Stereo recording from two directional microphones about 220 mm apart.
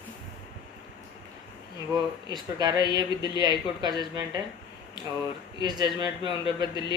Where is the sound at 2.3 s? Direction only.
20° right (ahead or behind).